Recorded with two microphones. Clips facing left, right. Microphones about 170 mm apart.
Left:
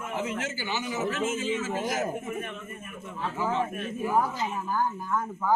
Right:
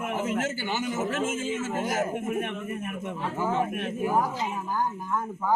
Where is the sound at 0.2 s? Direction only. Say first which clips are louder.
Right 2 dB; 50° right (ahead or behind).